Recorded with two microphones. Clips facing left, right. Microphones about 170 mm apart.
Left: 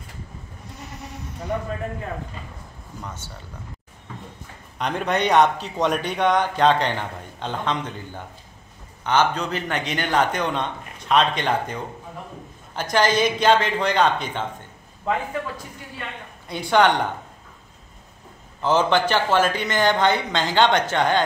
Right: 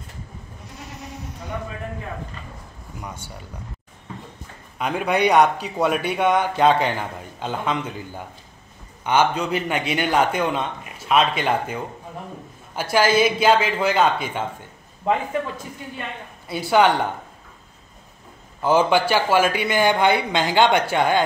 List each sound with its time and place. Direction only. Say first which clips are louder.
3.0 s a man's voice: right 1 dB; 10° right (ahead or behind)
4.7 s a man's voice: right 2 dB; 5° right (ahead or behind)
15.1 s speech: right 3 dB; 20° right (ahead or behind)
16.4 s speech: right 1 dB; 5° right (ahead or behind)
18.6 s a man's voice: right 2 dB; 10° right (ahead or behind)